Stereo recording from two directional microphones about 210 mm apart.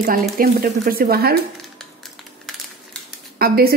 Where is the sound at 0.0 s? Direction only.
45° right (ahead or behind).